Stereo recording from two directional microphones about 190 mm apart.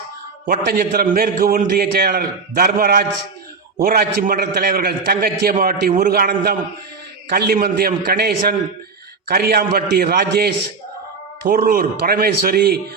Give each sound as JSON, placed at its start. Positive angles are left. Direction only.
{"t": 0.4, "sound": "a man's voice", "side_deg": -50}